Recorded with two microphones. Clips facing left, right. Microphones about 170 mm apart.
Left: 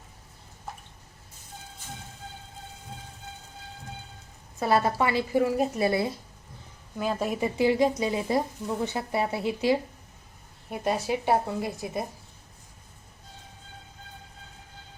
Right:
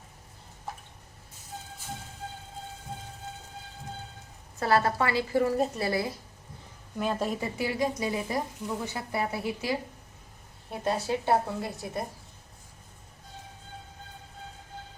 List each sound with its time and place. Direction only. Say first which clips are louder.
4.6 s speech: left 1 dB; 20° left (ahead or behind)
7.0 s a woman's voice: left 1 dB; 5° left (ahead or behind)
7.3 s a woman's voice: left 7 dB; 20° left (ahead or behind)